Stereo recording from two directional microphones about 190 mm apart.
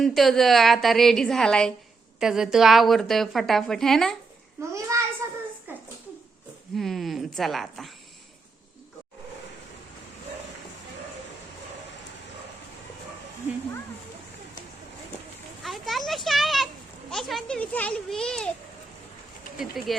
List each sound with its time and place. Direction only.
0.0 s a woman's voice: centre (ahead or behind)
4.9 s a sound: 15° right (ahead or behind)
6.7 s speech: centre (ahead or behind)
15.6 s children playing: centre (ahead or behind)
17.1 s a woman's voice: centre (ahead or behind)
19.5 s a woman's voice: centre (ahead or behind)